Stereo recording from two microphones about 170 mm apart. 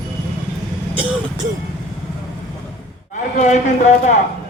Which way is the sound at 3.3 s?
45° left (ahead or behind).